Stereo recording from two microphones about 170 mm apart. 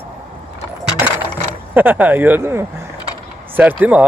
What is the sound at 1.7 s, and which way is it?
Speech, 10° right (ahead or behind).